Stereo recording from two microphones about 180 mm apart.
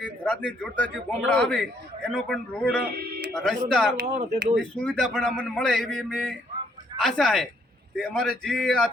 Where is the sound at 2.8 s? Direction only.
60° right (ahead or behind).